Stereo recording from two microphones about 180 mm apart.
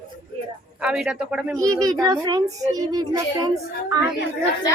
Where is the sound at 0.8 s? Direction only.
5° right (ahead or behind).